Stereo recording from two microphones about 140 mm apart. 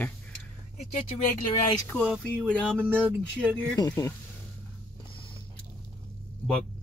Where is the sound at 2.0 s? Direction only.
5° right (ahead or behind).